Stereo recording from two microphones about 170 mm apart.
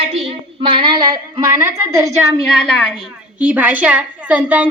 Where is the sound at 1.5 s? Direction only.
15° right (ahead or behind).